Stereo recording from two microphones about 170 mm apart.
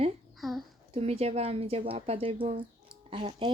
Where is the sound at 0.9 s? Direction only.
35° right (ahead or behind).